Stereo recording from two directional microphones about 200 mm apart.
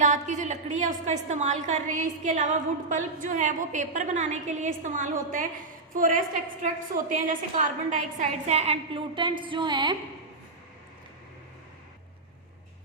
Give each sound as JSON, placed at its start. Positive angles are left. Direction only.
{"t": 0.0, "sound": "a woman's voice", "side_deg": -40}